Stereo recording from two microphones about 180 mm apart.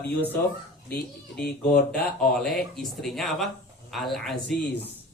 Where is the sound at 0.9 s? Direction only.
60° left (ahead or behind).